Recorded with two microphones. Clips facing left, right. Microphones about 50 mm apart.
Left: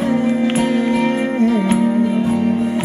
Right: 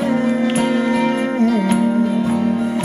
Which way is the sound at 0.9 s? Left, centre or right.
Left.